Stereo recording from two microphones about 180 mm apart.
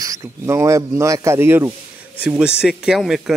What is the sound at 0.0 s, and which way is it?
Speech, 20° right (ahead or behind).